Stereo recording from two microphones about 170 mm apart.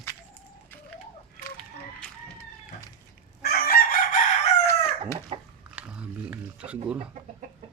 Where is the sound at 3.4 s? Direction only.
60° left (ahead or behind).